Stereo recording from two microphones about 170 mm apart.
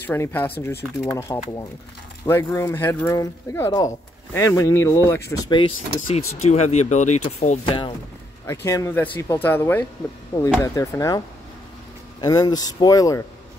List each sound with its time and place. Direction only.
0.0 s speech: 10° left (ahead or behind)
6.0 s speech: 40° left (ahead or behind)
7.6 s speech: 30° left (ahead or behind)
8.5 s speech: 15° left (ahead or behind)